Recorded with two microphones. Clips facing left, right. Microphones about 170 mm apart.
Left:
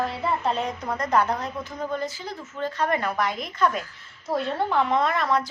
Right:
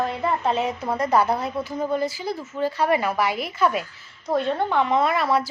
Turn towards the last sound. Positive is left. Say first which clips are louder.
# right 2 dB
turn(degrees=-10)  # may be behind; listen again after turning